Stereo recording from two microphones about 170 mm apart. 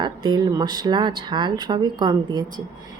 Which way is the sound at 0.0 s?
25° right (ahead or behind).